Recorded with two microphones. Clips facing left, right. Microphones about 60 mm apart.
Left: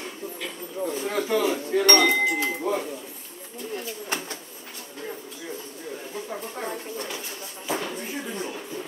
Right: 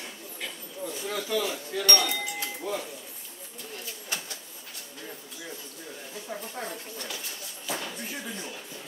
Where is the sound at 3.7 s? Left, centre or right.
Left.